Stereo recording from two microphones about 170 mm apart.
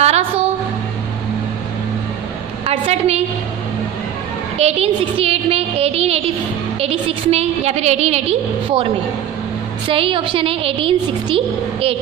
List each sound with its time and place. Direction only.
0.0 s music: 40° right (ahead or behind)
2.6 s a sound: 35° right (ahead or behind)
4.6 s a woman's voice: 40° right (ahead or behind)
9.8 s a woman's voice: 30° right (ahead or behind)